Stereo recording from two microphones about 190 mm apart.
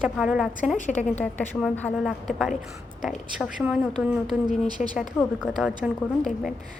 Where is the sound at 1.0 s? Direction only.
10° left (ahead or behind).